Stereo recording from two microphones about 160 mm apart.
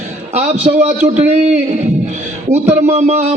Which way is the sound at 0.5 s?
40° right (ahead or behind).